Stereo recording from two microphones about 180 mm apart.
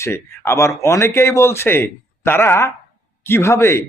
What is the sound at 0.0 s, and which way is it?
Speech, 15° left (ahead or behind).